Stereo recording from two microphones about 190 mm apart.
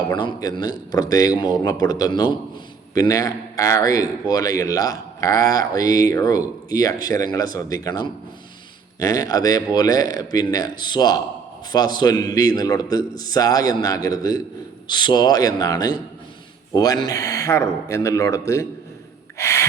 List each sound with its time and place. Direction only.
0.1 s a man's voice: 20° left (ahead or behind)